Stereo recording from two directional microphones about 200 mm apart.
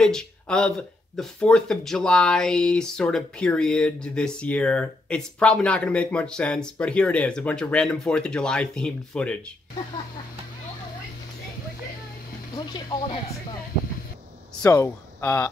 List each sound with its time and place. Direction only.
0.0 s speech: 5° left (ahead or behind)
12.5 s speech: 25° left (ahead or behind)
14.6 s speech: 10° left (ahead or behind)